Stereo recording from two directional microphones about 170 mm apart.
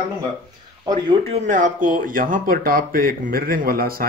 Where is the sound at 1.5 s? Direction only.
50° right (ahead or behind).